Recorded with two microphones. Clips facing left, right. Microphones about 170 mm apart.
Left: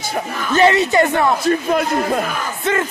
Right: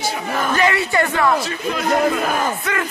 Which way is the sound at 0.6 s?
25° left (ahead or behind).